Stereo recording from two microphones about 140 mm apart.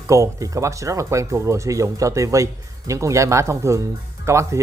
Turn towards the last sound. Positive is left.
turn(degrees=-20)  # may be behind; listen again after turning